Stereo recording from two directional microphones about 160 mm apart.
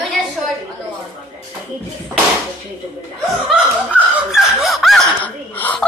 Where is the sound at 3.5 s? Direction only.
5° right (ahead or behind).